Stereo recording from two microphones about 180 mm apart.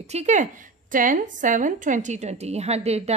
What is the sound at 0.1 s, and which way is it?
A woman's voice, 40° right (ahead or behind).